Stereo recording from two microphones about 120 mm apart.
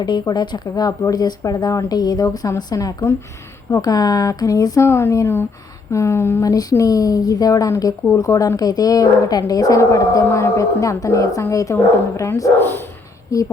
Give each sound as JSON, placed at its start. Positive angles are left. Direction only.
{"t": 0.0, "sound": "speech", "side_deg": 35}